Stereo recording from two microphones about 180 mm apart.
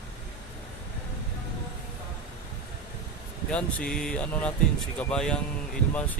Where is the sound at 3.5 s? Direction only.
5° left (ahead or behind).